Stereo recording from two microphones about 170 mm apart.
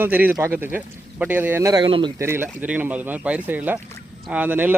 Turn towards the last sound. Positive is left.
turn(degrees=-10)  # may be behind; listen again after turning